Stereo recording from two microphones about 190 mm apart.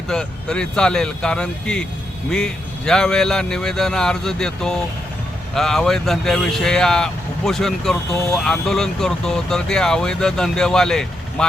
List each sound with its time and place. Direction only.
0.1 s speech: 5° left (ahead or behind)